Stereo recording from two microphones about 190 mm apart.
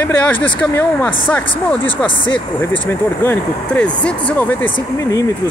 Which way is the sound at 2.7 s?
10° left (ahead or behind).